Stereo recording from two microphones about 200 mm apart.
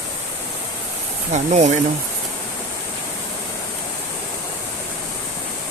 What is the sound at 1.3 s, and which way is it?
Speech, 35° right (ahead or behind).